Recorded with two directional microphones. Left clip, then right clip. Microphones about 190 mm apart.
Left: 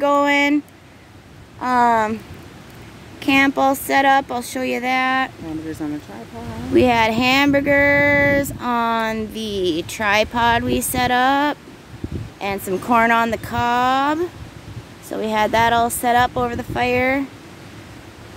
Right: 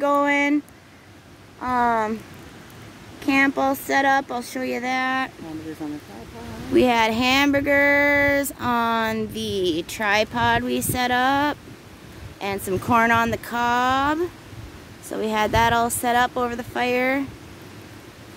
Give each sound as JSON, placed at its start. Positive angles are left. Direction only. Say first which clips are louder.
{"t": 0.0, "sound": "a sound", "louder": "left 4 dB", "side_deg": 0}
{"t": 1.6, "sound": "speech", "louder": "left 5 dB", "side_deg": 10}
{"t": 3.2, "sound": "speech", "louder": "left 4 dB", "side_deg": 5}
{"t": 5.8, "sound": "speech", "louder": "left 5 dB", "side_deg": 60}
{"t": 6.7, "sound": "speech", "louder": "left 3 dB", "side_deg": 0}